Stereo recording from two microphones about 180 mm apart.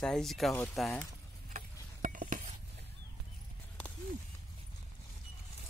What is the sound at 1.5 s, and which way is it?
Stir, 45° right (ahead or behind).